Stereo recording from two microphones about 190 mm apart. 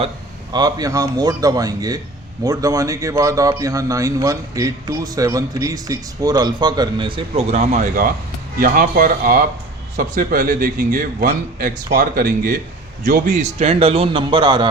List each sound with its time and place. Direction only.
0.5 s a man's voice: 20° right (ahead or behind); by 13.3 s 50° right (ahead or behind)
13.3 s a man's voice: 35° right (ahead or behind)